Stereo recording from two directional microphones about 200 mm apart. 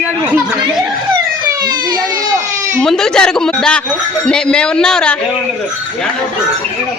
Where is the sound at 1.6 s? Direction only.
20° right (ahead or behind).